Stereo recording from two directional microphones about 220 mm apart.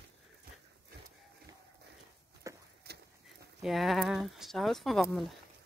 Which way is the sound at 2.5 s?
15° right (ahead or behind).